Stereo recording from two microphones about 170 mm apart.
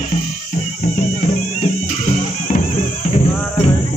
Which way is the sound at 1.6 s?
45° left (ahead or behind).